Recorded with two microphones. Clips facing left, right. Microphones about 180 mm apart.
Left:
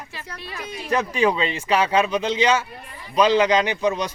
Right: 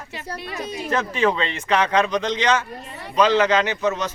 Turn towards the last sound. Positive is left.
turn(degrees=15)  # may be behind; listen again after turning